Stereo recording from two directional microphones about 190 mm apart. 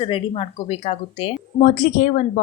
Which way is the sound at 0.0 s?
30° left (ahead or behind).